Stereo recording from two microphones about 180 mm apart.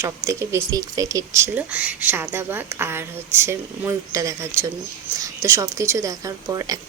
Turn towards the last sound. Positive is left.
turn(degrees=-20)  # may be behind; listen again after turning